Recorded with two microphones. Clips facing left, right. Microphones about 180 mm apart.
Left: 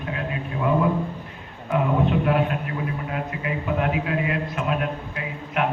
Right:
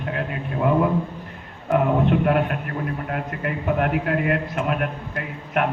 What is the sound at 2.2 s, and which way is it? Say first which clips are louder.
A man's voice: right 1 dB; 55° right (ahead or behind).